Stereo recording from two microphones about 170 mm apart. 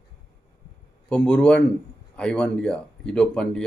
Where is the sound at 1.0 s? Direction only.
5° left (ahead or behind).